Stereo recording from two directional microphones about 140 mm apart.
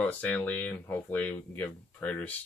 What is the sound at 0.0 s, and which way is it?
Speech, 10° left (ahead or behind).